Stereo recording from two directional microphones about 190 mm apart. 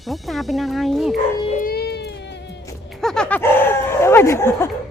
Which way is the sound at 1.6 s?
55° left (ahead or behind).